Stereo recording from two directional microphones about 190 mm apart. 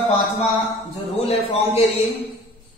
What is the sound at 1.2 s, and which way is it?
Speech, 35° left (ahead or behind).